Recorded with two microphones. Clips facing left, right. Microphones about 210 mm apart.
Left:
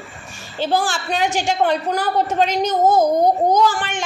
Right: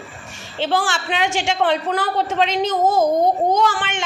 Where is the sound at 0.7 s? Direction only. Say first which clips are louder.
Left 1 dB; 80° right.